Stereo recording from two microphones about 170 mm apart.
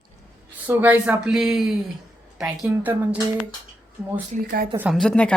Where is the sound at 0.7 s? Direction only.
10° right (ahead or behind).